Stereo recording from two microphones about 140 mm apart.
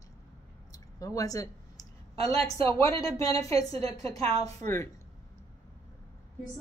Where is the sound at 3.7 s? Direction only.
45° right (ahead or behind).